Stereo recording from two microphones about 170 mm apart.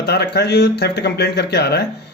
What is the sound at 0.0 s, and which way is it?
Speech, 75° left (ahead or behind).